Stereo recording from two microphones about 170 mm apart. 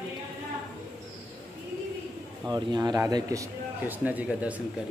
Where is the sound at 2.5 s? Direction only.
25° right (ahead or behind); by 4.5 s 10° right (ahead or behind).